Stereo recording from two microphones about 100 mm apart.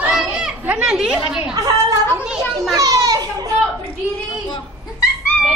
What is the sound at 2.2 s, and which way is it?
Speech, 10° right (ahead or behind).